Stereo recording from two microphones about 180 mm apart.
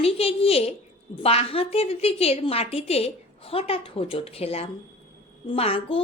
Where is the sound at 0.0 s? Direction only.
35° left (ahead or behind).